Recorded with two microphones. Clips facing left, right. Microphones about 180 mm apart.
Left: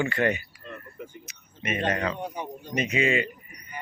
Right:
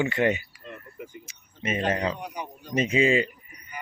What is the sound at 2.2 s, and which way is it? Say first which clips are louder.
Speech: left 2 dB; 30° left (ahead or behind).